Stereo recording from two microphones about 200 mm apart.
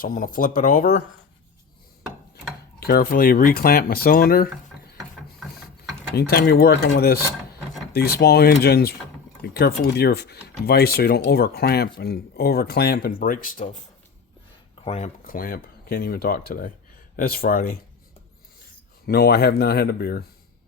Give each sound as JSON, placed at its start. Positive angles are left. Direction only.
{"t": 0.0, "sound": "speech", "side_deg": 40}
{"t": 2.8, "sound": "speech", "side_deg": 45}
{"t": 6.1, "sound": "speech", "side_deg": 50}
{"t": 8.2, "sound": "speech", "side_deg": 50}
{"t": 14.8, "sound": "speech", "side_deg": 30}
{"t": 15.2, "sound": "speech", "side_deg": 45}
{"t": 19.0, "sound": "speech", "side_deg": 50}